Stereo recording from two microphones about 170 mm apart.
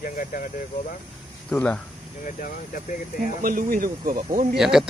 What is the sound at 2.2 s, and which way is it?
Speech, 55° left (ahead or behind).